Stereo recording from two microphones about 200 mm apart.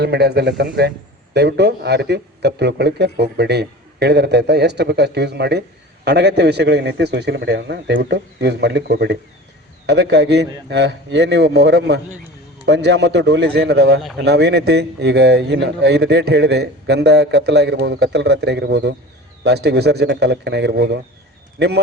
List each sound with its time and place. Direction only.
0.0 s a man's voice: 55° right (ahead or behind)